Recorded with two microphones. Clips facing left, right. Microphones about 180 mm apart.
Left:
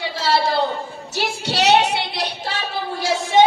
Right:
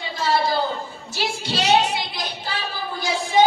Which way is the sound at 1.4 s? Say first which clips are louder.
Left 3 dB; 75° left (ahead or behind).